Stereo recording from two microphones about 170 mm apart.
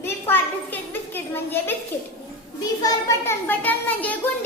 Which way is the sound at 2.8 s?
20° left (ahead or behind).